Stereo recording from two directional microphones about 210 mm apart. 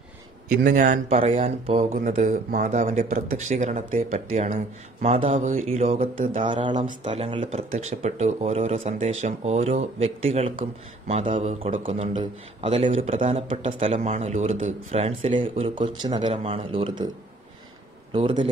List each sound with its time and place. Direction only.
0.7 s speech: 40° right (ahead or behind)
6.5 s a man's voice: 20° right (ahead or behind)
18.1 s a man's voice: 25° right (ahead or behind)